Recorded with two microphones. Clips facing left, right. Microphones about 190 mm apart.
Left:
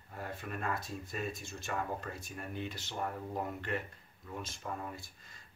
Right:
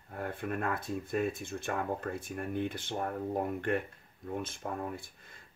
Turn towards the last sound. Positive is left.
turn(degrees=-55)  # may be behind; listen again after turning